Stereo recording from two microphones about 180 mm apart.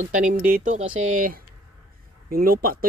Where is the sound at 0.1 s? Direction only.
45° right (ahead or behind).